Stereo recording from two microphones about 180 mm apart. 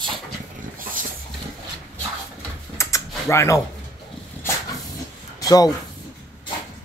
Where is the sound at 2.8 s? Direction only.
15° left (ahead or behind).